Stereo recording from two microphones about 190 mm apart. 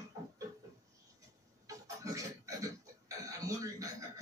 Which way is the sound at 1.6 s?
15° right (ahead or behind).